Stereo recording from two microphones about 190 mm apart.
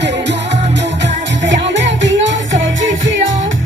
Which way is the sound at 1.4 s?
70° right (ahead or behind).